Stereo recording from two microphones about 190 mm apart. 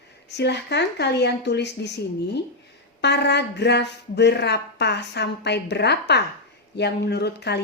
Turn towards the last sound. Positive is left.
turn(degrees=60)  # may be behind; listen again after turning